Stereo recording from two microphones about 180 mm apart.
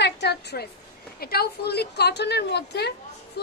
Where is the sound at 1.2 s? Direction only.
60° left (ahead or behind).